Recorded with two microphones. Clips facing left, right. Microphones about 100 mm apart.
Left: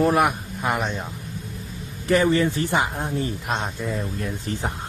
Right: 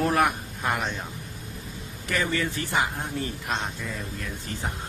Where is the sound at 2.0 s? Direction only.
30° left (ahead or behind).